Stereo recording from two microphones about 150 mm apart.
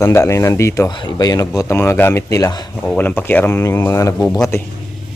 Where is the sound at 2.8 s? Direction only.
10° left (ahead or behind).